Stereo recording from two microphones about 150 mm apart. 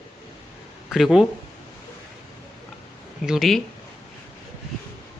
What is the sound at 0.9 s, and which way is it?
Speech, centre (ahead or behind).